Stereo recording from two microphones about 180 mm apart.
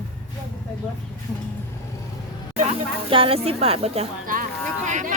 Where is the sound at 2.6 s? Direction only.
30° right (ahead or behind).